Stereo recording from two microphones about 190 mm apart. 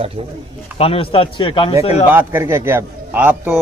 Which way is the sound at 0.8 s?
30° left (ahead or behind).